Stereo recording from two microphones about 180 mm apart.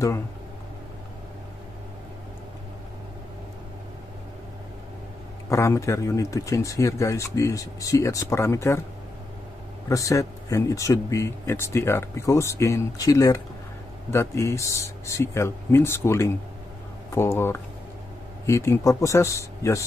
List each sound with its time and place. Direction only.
5.5 s speech: 15° left (ahead or behind)
9.8 s speech: 20° left (ahead or behind)